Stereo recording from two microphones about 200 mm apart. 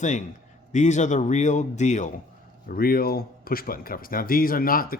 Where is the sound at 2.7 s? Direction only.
50° left (ahead or behind).